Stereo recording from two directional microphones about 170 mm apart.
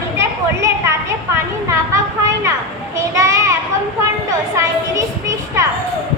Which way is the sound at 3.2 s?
20° right (ahead or behind).